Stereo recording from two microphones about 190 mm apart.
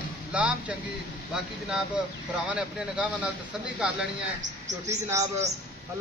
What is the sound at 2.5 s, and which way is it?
Speech, 5° right (ahead or behind).